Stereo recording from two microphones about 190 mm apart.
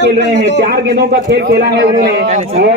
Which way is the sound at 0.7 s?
60° right (ahead or behind).